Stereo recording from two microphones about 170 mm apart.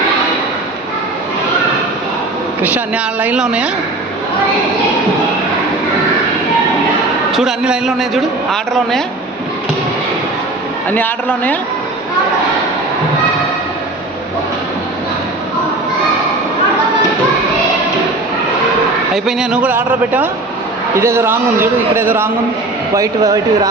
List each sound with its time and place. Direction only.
2.6 s a man's voice: 10° right (ahead or behind)
7.3 s a man's voice: 5° right (ahead or behind)
10.8 s a man's voice: 10° left (ahead or behind)
19.1 s a man's voice: 5° right (ahead or behind); by 23.4 s 20° right (ahead or behind)